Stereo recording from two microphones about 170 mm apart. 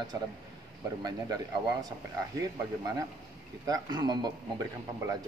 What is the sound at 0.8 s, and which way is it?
Speech, 20° right (ahead or behind).